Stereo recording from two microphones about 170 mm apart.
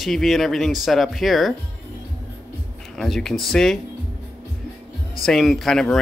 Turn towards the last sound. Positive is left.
turn(degrees=5)  # may be behind; listen again after turning